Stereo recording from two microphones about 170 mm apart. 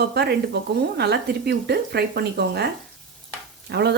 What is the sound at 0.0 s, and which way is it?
Speech, 75° right (ahead or behind).